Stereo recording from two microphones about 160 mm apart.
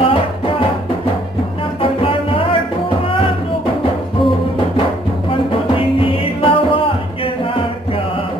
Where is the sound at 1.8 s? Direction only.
35° left (ahead or behind).